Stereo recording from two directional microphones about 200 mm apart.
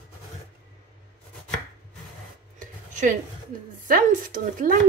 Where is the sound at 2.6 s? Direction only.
40° right (ahead or behind).